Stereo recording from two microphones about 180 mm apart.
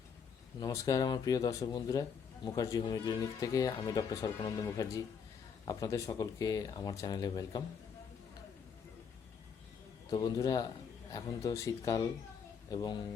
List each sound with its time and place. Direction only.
0.6 s speech: 20° left (ahead or behind)
10.1 s speech: 20° left (ahead or behind)